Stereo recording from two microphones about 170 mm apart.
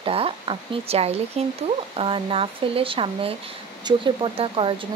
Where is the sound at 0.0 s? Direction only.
35° right (ahead or behind).